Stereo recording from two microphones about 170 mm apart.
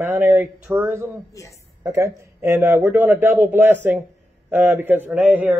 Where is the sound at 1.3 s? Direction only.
20° left (ahead or behind).